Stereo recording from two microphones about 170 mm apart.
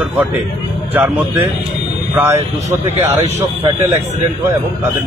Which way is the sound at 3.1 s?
20° right (ahead or behind).